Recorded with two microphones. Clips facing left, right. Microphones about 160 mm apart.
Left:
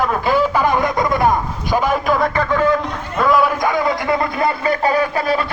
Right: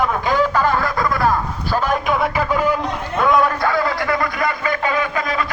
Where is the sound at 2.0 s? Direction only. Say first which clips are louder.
Left 2 dB; 5° right (ahead or behind).